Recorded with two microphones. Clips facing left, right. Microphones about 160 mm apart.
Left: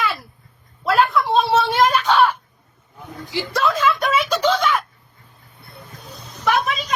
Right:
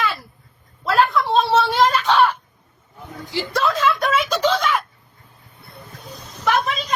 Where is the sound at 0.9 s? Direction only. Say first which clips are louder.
Even; 10° left (ahead or behind).